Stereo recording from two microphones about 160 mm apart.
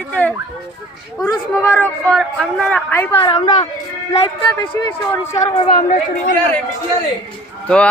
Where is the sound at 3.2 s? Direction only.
30° left (ahead or behind).